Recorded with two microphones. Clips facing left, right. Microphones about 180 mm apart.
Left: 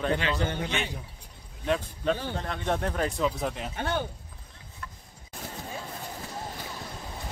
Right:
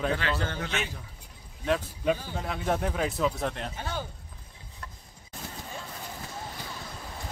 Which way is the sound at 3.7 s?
65° left (ahead or behind).